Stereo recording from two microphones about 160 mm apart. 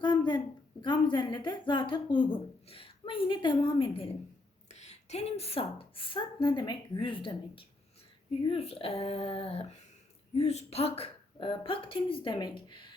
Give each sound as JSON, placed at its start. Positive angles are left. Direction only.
{"t": 0.0, "sound": "a woman's voice", "side_deg": 30}